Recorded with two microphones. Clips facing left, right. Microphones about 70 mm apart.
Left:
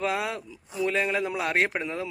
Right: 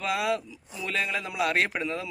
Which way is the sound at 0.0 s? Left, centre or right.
Left.